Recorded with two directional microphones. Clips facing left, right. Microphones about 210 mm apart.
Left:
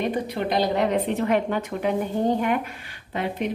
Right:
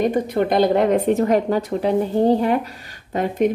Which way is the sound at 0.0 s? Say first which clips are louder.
Right 6 dB; 45° right (ahead or behind).